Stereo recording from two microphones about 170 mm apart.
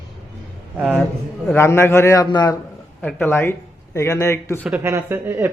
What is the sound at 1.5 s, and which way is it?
A man's voice, 15° left (ahead or behind).